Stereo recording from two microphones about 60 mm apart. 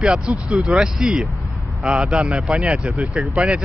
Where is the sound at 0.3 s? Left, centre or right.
Centre.